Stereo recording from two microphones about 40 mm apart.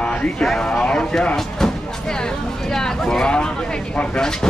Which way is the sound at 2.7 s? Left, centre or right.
Centre.